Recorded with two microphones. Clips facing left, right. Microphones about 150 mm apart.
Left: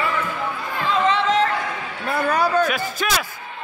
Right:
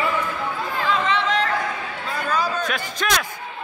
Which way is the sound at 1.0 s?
35° left (ahead or behind).